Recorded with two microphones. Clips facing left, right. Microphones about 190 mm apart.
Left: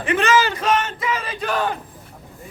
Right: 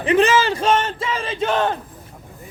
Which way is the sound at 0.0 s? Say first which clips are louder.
Right 3 dB; 30° right (ahead or behind).